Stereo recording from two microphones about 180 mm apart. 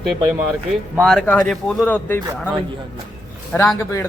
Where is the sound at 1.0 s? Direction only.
5° left (ahead or behind).